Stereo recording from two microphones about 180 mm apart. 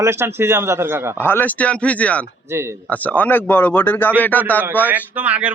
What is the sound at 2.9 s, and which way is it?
A man's voice, 10° left (ahead or behind).